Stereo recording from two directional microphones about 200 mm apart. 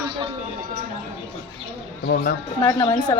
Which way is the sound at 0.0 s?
25° right (ahead or behind).